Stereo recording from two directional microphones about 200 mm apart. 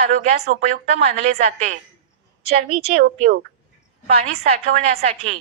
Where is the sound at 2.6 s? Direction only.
45° right (ahead or behind).